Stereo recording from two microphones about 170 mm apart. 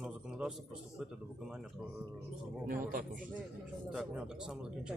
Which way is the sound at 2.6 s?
55° right (ahead or behind).